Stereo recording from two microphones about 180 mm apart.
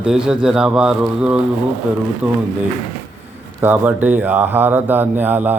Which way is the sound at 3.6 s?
10° right (ahead or behind).